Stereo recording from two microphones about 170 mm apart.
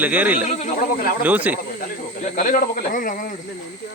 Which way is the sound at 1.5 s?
55° left (ahead or behind).